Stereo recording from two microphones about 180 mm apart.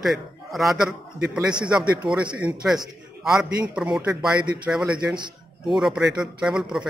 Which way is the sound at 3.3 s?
5° right (ahead or behind).